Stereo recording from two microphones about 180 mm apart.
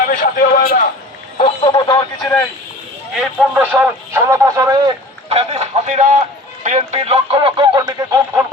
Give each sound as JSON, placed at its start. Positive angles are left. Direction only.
{"t": 0.0, "sound": "a sound", "side_deg": 50}
{"t": 1.4, "sound": "radio", "side_deg": 30}
{"t": 3.2, "sound": "speech", "side_deg": -5}
{"t": 5.3, "sound": "speech", "side_deg": -35}